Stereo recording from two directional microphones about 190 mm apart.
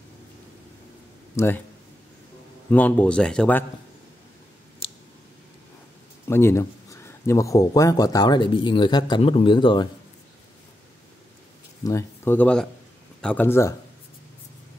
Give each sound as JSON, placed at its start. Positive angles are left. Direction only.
{"t": 1.3, "sound": "speech", "side_deg": 10}
{"t": 2.7, "sound": "speech", "side_deg": 5}
{"t": 6.2, "sound": "speech", "side_deg": 15}
{"t": 11.8, "sound": "speech", "side_deg": 15}